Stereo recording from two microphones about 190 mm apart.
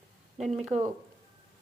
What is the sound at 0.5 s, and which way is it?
Speech, 35° right (ahead or behind).